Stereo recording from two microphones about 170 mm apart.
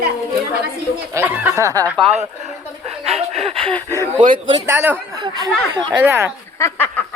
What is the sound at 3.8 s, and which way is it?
Speech, 15° left (ahead or behind).